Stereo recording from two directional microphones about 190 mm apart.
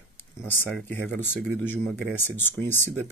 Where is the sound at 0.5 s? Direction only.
10° left (ahead or behind).